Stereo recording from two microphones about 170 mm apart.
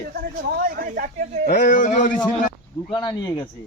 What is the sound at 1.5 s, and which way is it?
Speech, 55° left (ahead or behind).